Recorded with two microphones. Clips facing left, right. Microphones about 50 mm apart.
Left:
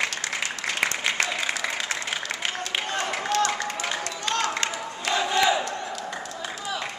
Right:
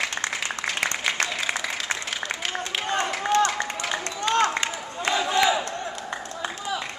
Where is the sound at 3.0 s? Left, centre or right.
Centre.